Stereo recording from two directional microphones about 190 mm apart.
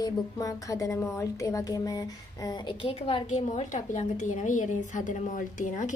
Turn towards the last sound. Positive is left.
turn(degrees=40)  # may be behind; listen again after turning